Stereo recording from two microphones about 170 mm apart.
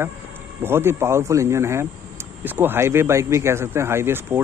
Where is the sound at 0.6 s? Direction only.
15° right (ahead or behind).